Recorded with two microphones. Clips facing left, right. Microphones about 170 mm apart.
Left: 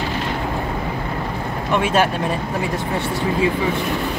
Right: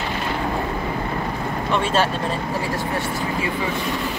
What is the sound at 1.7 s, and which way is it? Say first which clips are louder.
Speech: left 3 dB; 10° left (ahead or behind).